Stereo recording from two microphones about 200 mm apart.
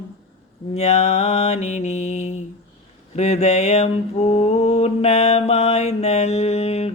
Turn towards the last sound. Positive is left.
turn(degrees=30)  # may be behind; listen again after turning